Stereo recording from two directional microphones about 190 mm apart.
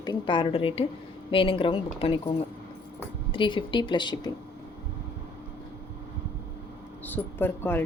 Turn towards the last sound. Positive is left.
turn(degrees=10)  # may be behind; listen again after turning